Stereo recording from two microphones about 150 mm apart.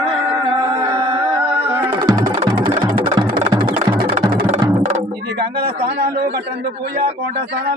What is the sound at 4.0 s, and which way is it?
Music, 75° right (ahead or behind).